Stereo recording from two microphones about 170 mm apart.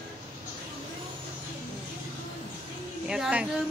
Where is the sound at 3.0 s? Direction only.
5° right (ahead or behind).